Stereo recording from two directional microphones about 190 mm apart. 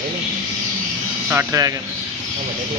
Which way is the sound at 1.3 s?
15° right (ahead or behind).